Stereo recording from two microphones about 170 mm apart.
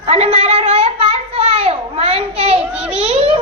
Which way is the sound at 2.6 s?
5° right (ahead or behind).